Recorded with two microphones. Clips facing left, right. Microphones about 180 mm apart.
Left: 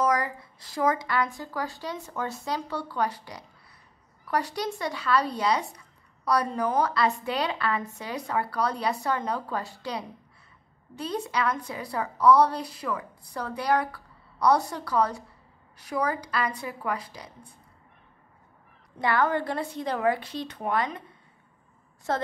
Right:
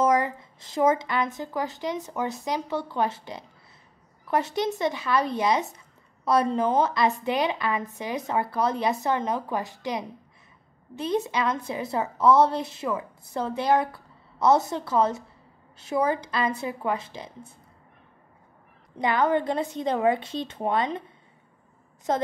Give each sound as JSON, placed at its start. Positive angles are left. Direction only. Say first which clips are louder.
{"t": 0.0, "sound": "a woman's voice", "louder": "right 3 dB", "side_deg": -25}
{"t": 18.9, "sound": "a woman's voice", "louder": "right 2 dB", "side_deg": -20}
{"t": 22.1, "sound": "a woman's voice", "louder": "right 3 dB", "side_deg": -20}